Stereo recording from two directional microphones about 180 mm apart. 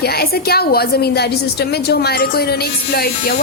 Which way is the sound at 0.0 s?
60° left (ahead or behind).